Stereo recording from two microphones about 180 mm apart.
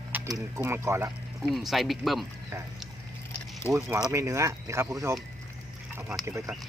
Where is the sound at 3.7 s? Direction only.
15° right (ahead or behind).